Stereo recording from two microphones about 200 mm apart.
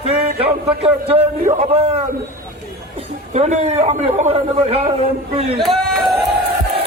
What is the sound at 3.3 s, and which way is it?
A man's voice, 35° right (ahead or behind).